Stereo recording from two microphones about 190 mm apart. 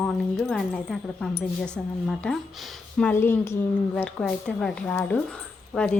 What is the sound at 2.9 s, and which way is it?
A woman's voice, 10° left (ahead or behind).